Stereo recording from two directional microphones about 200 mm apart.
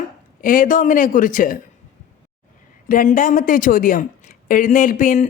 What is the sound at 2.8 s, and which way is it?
A woman's voice, 45° left (ahead or behind).